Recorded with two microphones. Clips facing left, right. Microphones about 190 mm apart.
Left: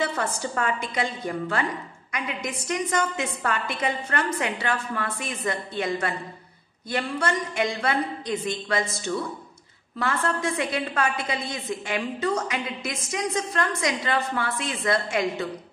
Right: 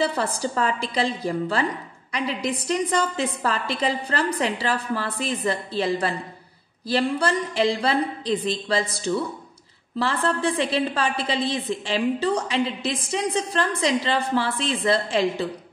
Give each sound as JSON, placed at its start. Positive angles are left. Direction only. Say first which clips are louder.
{"t": 0.0, "sound": "a woman's voice", "louder": "right 3 dB", "side_deg": -35}